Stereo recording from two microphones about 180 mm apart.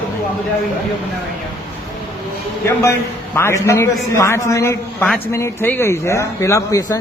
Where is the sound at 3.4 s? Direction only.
15° left (ahead or behind).